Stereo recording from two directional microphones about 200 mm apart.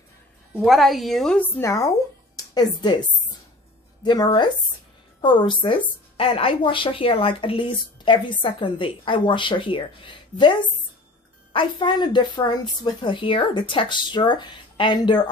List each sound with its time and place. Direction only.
0.6 s a woman's voice: centre (ahead or behind); by 15.1 s 25° left (ahead or behind)